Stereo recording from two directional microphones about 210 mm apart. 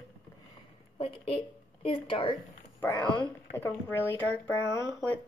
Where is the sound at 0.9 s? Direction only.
25° left (ahead or behind).